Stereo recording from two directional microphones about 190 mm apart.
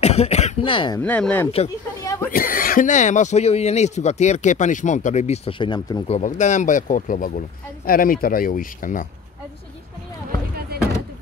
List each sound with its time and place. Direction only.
0.0 s speech: 35° left (ahead or behind)
1.0 s speech: 5° left (ahead or behind)
2.3 s speech: 50° left (ahead or behind); by 6.1 s 25° left (ahead or behind)
6.1 s speech: 40° left (ahead or behind)